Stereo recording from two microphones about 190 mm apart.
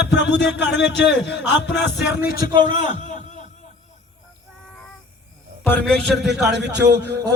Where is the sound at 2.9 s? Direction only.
40° left (ahead or behind).